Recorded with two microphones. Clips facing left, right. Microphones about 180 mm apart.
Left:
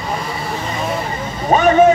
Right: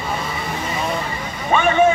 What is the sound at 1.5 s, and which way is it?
Vehicle, 40° left (ahead or behind).